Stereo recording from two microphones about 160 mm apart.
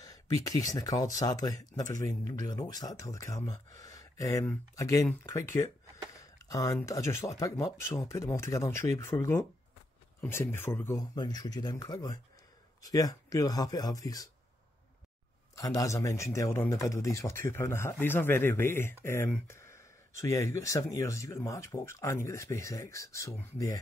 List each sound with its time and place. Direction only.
0.0 s speech: 20° left (ahead or behind)
6.3 s a sound: 20° left (ahead or behind)
6.9 s speech: 20° left (ahead or behind)
15.5 s speech: 20° left (ahead or behind)